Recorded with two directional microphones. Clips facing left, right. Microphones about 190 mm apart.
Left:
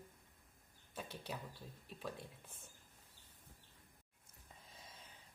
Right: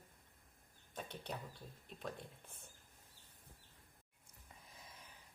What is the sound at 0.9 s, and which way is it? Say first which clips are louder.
Speech: even; 5° left (ahead or behind).